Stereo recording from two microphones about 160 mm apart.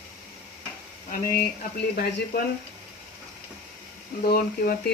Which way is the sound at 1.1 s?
60° left (ahead or behind).